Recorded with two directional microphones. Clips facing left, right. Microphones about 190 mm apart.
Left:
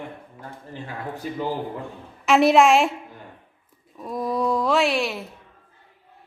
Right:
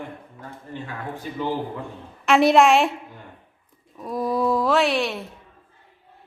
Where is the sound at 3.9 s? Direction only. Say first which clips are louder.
Right 2 dB; centre (ahead or behind).